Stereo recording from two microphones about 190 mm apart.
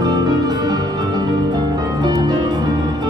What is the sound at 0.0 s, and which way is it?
Music, 20° right (ahead or behind).